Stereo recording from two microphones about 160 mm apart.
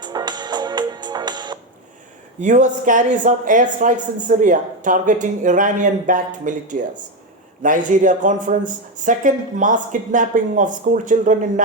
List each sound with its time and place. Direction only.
0.0 s music: 25° right (ahead or behind)
2.4 s speech: 50° right (ahead or behind)